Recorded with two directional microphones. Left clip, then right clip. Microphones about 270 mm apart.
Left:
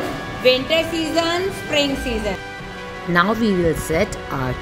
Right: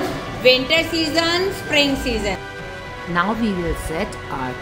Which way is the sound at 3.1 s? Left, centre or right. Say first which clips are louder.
Left 3 dB; centre.